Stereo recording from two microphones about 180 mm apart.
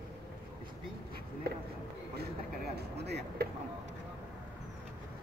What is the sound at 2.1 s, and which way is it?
Speech, 65° right (ahead or behind).